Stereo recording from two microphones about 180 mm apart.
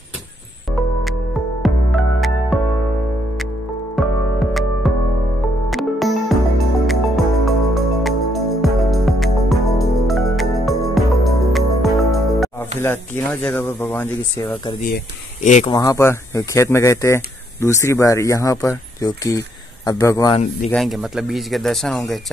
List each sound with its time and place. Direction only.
1.6 s music: centre (ahead or behind)
3.9 s music: centre (ahead or behind)
12.8 s speech: 10° left (ahead or behind)
15.4 s speech: 40° left (ahead or behind)
15.7 s speech: 20° left (ahead or behind)
20.7 s speech: centre (ahead or behind)